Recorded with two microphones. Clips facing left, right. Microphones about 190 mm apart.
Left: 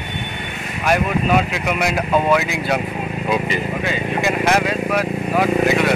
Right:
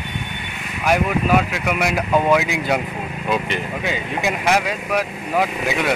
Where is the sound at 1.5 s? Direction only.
5° right (ahead or behind).